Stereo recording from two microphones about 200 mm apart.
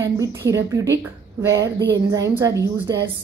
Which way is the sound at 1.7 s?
60° right (ahead or behind).